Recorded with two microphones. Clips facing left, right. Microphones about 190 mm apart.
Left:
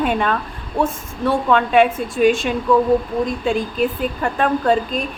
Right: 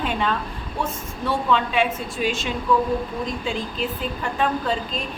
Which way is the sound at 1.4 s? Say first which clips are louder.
Left 7 dB; 55° left (ahead or behind).